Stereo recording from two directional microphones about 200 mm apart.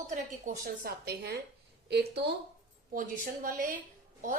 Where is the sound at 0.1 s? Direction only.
40° right (ahead or behind); by 2.2 s 55° right (ahead or behind).